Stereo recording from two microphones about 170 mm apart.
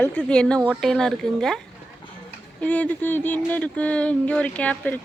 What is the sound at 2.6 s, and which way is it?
Speech, 10° left (ahead or behind).